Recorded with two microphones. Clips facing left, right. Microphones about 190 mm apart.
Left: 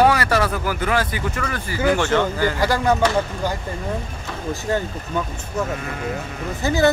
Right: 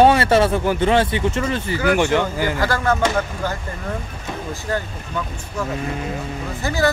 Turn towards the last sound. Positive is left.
turn(degrees=20)  # may be behind; listen again after turning